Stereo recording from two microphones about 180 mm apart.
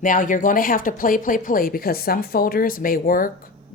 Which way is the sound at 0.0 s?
50° left (ahead or behind).